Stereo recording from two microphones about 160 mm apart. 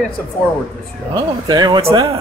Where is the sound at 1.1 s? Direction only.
25° right (ahead or behind).